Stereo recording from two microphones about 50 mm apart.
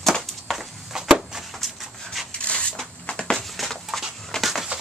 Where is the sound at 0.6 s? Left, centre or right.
Centre.